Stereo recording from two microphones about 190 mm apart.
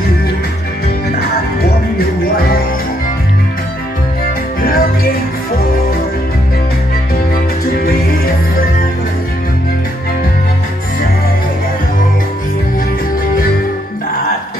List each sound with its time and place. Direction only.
2.0 s music: 50° left (ahead or behind)
4.6 s music: 50° left (ahead or behind)